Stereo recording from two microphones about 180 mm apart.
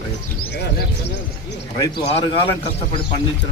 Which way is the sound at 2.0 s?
30° left (ahead or behind).